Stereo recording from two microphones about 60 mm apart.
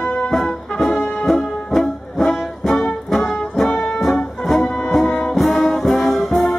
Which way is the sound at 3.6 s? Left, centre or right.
Centre.